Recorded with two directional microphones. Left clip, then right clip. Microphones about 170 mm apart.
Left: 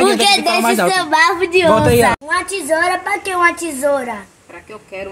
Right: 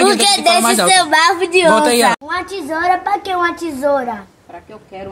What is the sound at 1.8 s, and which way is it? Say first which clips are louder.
Speech: even; 45° left (ahead or behind).